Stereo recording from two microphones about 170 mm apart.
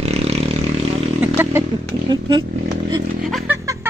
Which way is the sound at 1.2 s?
10° right (ahead or behind).